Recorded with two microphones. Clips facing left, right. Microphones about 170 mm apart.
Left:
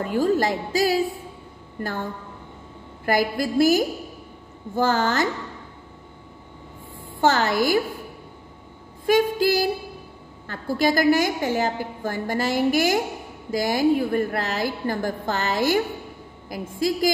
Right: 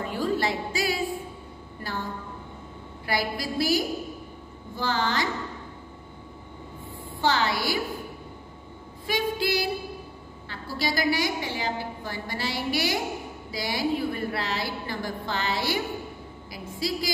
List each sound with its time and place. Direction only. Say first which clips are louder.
0.0 s a woman's voice: left 6 dB; 45° left (ahead or behind)
3.1 s a woman's voice: left 7 dB; 50° left (ahead or behind)
7.2 s a woman's voice: left 5 dB; 45° left (ahead or behind)
9.0 s a woman's voice: left 8 dB; 45° left (ahead or behind)